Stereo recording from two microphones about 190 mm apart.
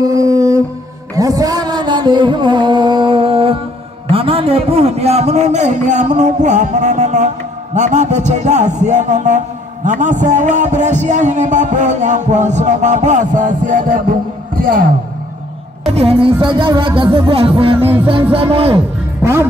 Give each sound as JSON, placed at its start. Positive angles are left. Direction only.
{"t": 0.0, "sound": "a sound", "side_deg": -20}
{"t": 1.1, "sound": "music", "side_deg": -20}
{"t": 4.1, "sound": "a man's voice", "side_deg": -30}
{"t": 15.9, "sound": "speech", "side_deg": -30}